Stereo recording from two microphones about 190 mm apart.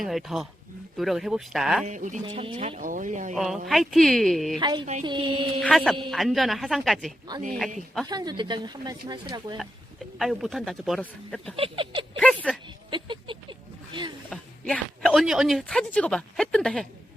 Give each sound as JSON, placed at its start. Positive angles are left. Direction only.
{"t": 0.0, "sound": "speech", "side_deg": 0}
{"t": 1.8, "sound": "speech", "side_deg": -40}
{"t": 2.2, "sound": "speech", "side_deg": -30}
{"t": 3.3, "sound": "speech", "side_deg": 0}
{"t": 4.6, "sound": "speech", "side_deg": -25}
{"t": 5.5, "sound": "speech", "side_deg": 0}
{"t": 8.0, "sound": "speech", "side_deg": -20}
{"t": 10.2, "sound": "speech", "side_deg": 0}
{"t": 11.5, "sound": "speech", "side_deg": -30}
{"t": 12.1, "sound": "a sound", "side_deg": 5}
{"t": 12.6, "sound": "a sound", "side_deg": -25}
{"t": 14.3, "sound": "speech", "side_deg": 5}